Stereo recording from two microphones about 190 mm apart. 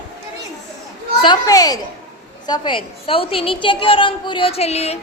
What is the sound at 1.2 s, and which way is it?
A woman's voice, 20° left (ahead or behind).